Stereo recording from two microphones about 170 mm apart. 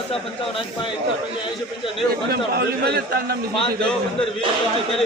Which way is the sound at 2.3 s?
70° right (ahead or behind).